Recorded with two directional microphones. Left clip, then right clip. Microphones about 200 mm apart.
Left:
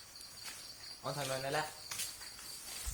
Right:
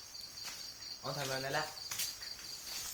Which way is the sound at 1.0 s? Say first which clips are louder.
Even; 40° left (ahead or behind).